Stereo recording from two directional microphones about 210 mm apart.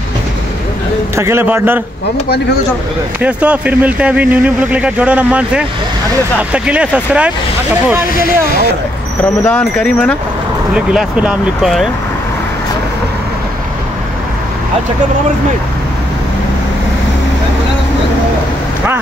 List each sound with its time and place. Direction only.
1.1 s speech: 10° right (ahead or behind)
3.2 s speech: 5° right (ahead or behind)
9.4 s speech: 10° left (ahead or behind)